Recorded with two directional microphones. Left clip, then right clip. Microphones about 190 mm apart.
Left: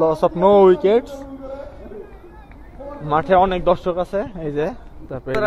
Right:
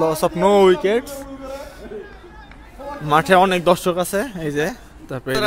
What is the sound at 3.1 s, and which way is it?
A man's voice, 90° right.